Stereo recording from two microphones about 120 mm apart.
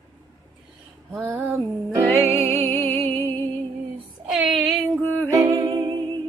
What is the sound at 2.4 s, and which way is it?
Music, 15° left (ahead or behind).